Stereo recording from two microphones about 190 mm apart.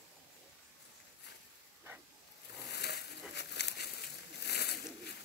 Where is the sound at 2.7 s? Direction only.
60° left (ahead or behind).